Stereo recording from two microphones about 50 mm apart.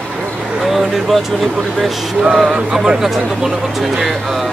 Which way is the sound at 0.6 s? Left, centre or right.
Centre.